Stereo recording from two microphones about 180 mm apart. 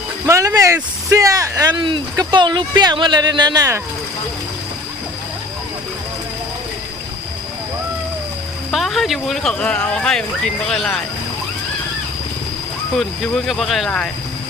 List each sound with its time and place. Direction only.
0.3 s speech: 20° right (ahead or behind)
8.7 s speech: centre (ahead or behind)
13.0 s speech: centre (ahead or behind)